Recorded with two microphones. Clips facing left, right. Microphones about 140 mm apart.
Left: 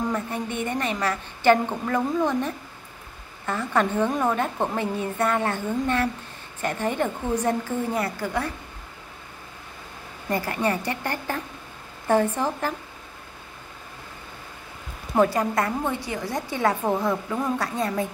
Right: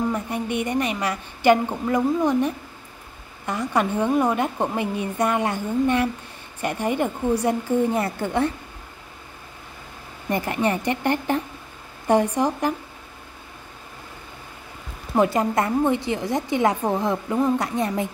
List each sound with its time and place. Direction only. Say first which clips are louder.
0.1 s a woman's voice: right 2 dB; 15° right (ahead or behind)
8.0 s a woman's voice: right 4 dB; 25° right (ahead or behind)
10.3 s a woman's voice: right 2 dB; 20° right (ahead or behind)
15.1 s a woman's voice: right 1 dB; 25° right (ahead or behind)